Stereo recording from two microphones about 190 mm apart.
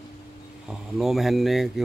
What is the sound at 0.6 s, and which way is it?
Speech, centre (ahead or behind).